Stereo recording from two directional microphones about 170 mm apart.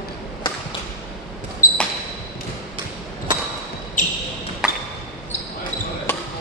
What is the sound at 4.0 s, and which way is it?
Basketball bounce, 50° left (ahead or behind).